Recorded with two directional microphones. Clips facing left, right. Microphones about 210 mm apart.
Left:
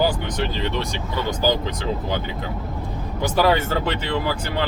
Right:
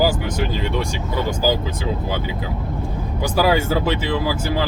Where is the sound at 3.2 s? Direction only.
10° right (ahead or behind).